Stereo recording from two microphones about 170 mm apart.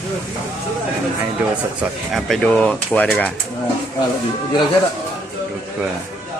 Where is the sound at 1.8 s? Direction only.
Centre (ahead or behind).